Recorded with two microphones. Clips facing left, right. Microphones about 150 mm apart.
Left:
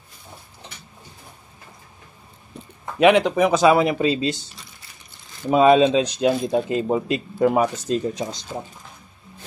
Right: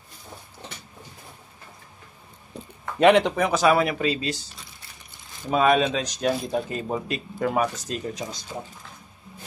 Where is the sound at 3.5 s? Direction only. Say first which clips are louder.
Left 4 dB; 20° left (ahead or behind).